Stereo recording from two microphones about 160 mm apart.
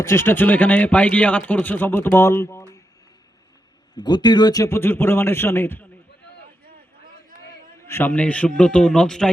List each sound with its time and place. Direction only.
0.0 s speech: 15° left (ahead or behind)
3.9 s speech: 25° left (ahead or behind)
7.9 s speech: 15° left (ahead or behind)